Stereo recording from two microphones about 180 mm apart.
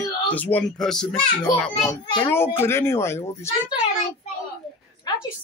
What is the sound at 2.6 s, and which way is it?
Speech, 15° left (ahead or behind).